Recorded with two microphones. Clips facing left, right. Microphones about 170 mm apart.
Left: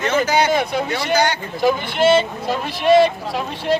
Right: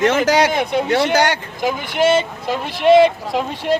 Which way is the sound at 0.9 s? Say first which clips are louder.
Right 4 dB; 75° right (ahead or behind).